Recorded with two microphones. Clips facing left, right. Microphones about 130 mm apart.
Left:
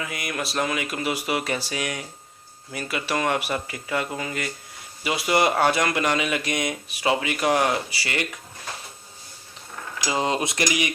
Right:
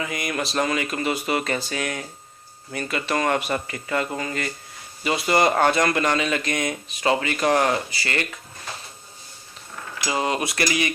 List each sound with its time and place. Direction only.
0.0 s speech: 5° left (ahead or behind)
10.0 s cutlery: 20° left (ahead or behind)